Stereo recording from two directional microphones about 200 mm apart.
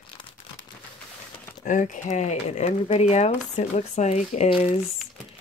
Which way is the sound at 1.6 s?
40° left (ahead or behind).